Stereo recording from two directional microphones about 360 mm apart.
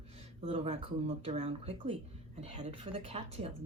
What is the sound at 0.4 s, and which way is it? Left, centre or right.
Speech, centre.